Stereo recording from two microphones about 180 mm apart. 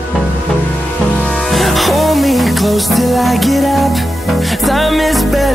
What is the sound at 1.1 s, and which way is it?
Music, 5° left (ahead or behind).